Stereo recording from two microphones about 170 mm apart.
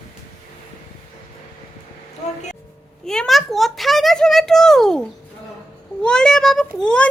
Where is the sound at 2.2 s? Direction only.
45° left (ahead or behind).